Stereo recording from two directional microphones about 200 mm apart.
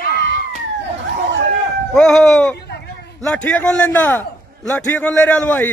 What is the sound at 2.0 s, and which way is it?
A man's voice, 5° left (ahead or behind).